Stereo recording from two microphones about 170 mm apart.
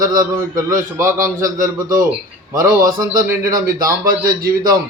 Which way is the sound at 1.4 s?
55° right (ahead or behind).